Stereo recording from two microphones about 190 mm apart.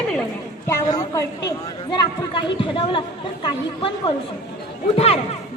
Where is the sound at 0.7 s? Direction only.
20° left (ahead or behind).